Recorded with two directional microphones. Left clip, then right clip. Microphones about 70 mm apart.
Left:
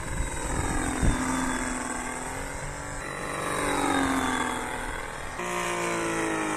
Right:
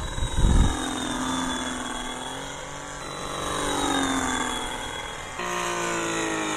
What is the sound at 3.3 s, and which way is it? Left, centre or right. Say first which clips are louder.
Vehicle: right 1 dB; left.